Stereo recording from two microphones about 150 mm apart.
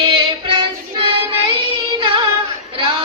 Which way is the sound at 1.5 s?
35° right (ahead or behind).